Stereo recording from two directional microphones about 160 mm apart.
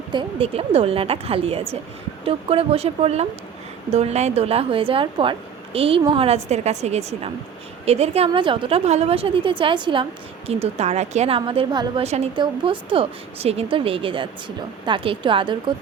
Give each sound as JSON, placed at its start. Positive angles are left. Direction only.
{"t": 0.1, "sound": "a woman's voice", "side_deg": -30}
{"t": 12.0, "sound": "a woman's voice", "side_deg": -45}
{"t": 12.4, "sound": "a woman's voice", "side_deg": -30}